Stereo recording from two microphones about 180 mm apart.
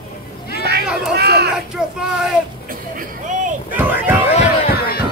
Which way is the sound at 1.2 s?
65° right (ahead or behind).